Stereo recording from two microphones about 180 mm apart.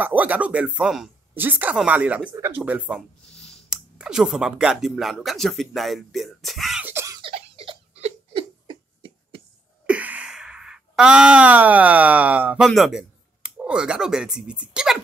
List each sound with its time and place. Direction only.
0.0 s speech: 10° right (ahead or behind)
7.2 s giggle: 30° right (ahead or behind)
9.8 s speech: 5° right (ahead or behind)